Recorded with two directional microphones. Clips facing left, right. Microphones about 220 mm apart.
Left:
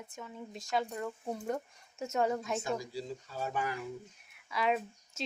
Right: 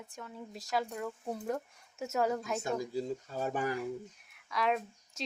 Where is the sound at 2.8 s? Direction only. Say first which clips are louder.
Right 5 dB; 50° right (ahead or behind).